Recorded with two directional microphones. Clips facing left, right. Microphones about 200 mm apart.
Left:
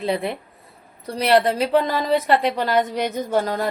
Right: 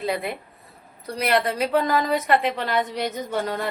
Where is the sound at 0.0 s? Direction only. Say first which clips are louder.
Left 3 dB; 30° left (ahead or behind).